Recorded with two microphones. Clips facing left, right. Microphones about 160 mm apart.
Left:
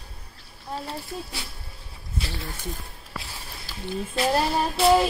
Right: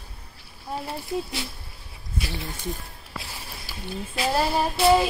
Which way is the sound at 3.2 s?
10° right (ahead or behind).